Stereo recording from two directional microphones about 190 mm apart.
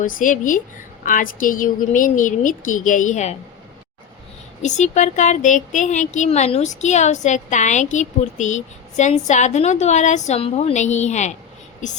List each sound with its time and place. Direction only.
0.0 s a woman's voice: 45° left (ahead or behind)
4.6 s speech: 40° left (ahead or behind)